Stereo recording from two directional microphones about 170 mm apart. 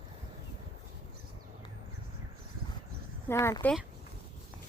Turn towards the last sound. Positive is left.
turn(degrees=15)  # may be behind; listen again after turning